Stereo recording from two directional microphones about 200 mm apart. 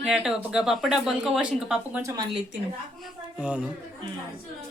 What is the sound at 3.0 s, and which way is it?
Speech, 5° right (ahead or behind).